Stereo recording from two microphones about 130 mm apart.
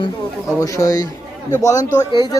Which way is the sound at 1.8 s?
70° left (ahead or behind).